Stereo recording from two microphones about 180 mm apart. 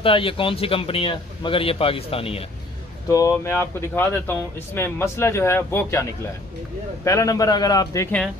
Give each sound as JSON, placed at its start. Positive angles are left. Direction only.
{"t": 0.0, "sound": "a man's voice", "side_deg": 30}
{"t": 3.1, "sound": "speech", "side_deg": 20}
{"t": 7.1, "sound": "a man's voice", "side_deg": 20}